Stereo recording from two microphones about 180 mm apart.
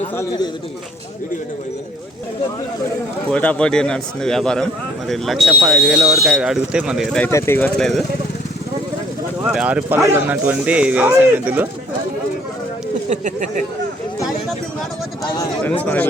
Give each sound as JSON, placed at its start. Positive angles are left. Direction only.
{"t": 0.2, "sound": "a man's voice", "side_deg": 20}
{"t": 3.3, "sound": "speech", "side_deg": 5}
{"t": 7.3, "sound": "speech", "side_deg": 15}
{"t": 9.4, "sound": "speech", "side_deg": -5}
{"t": 13.1, "sound": "speech", "side_deg": -45}
{"t": 15.6, "sound": "speech", "side_deg": 10}